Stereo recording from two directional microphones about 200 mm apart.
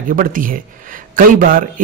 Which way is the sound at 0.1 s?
45° right (ahead or behind).